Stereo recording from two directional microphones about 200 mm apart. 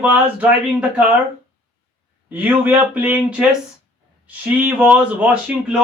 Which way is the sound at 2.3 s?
10° right (ahead or behind).